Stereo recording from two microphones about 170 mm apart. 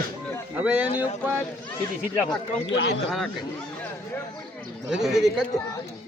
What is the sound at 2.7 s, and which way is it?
Speech, 90° left.